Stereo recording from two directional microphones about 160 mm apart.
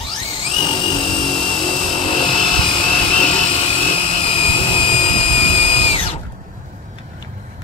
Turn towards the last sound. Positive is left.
turn(degrees=40)  # may be behind; listen again after turning